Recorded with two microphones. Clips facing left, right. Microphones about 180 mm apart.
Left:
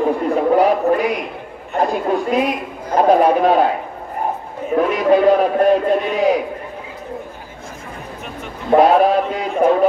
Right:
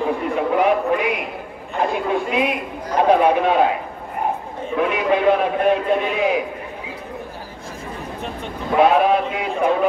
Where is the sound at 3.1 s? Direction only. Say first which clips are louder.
Left 3 dB; 40° left (ahead or behind).